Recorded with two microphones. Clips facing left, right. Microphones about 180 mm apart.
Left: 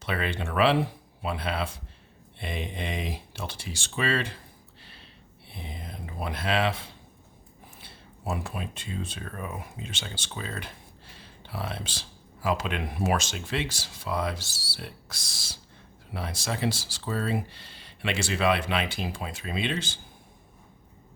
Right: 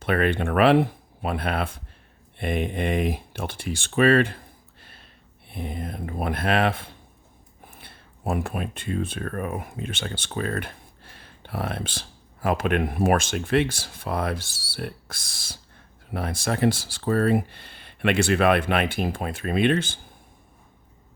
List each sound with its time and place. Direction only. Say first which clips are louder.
0.0 s speech: right 8 dB; 55° right (ahead or behind)